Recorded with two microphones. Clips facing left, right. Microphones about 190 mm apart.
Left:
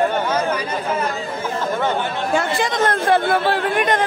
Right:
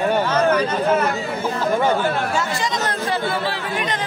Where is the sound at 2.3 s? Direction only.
55° left (ahead or behind).